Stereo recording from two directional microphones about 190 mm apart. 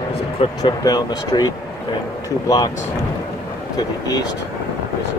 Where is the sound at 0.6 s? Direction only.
20° left (ahead or behind).